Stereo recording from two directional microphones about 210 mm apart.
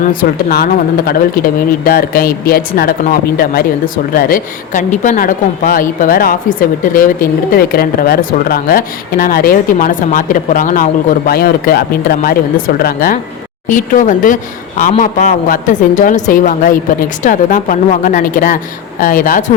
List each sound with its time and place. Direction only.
0.1 s speech: 45° left (ahead or behind)